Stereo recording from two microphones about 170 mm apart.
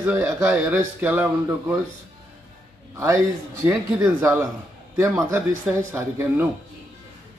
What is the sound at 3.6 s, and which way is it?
Speech, 15° right (ahead or behind).